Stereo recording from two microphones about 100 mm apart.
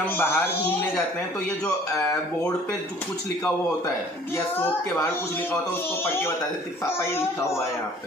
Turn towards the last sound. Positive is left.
turn(degrees=30)  # may be behind; listen again after turning